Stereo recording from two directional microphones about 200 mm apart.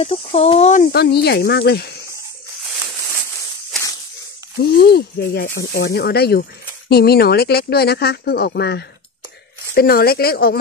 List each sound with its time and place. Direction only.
0.0 s speech: 30° left (ahead or behind)
0.9 s speech: 55° left (ahead or behind)
4.6 s speech: 55° left (ahead or behind)